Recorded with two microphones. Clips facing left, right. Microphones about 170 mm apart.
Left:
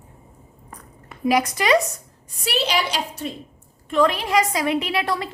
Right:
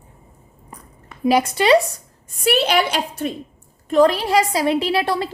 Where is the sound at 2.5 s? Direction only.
55° right (ahead or behind).